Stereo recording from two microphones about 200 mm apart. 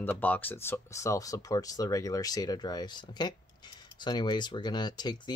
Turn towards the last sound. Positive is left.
turn(degrees=20)  # may be behind; listen again after turning